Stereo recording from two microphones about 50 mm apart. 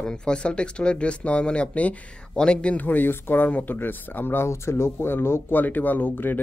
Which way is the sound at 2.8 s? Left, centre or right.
Left.